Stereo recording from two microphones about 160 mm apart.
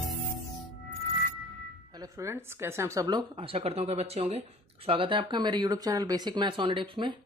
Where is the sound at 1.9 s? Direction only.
25° right (ahead or behind).